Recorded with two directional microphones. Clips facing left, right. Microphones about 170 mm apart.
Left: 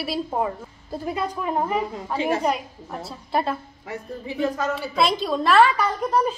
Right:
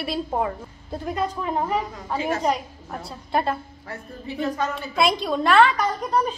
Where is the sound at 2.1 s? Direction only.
30° left (ahead or behind).